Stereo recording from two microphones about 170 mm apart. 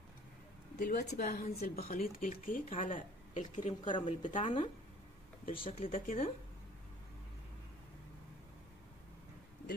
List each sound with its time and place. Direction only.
0.7 s speech: 60° left (ahead or behind)
4.4 s speech: 30° left (ahead or behind)
5.4 s speech: 55° left (ahead or behind)